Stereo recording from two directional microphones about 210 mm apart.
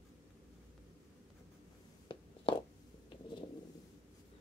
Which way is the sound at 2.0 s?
20° left (ahead or behind).